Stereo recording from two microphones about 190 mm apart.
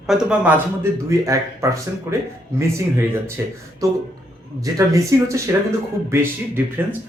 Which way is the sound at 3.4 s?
15° right (ahead or behind).